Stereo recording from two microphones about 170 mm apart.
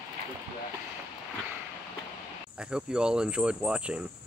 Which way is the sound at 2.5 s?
5° right (ahead or behind).